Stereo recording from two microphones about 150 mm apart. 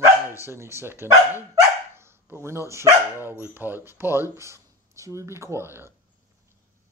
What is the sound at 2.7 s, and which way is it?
Speech, 15° right (ahead or behind).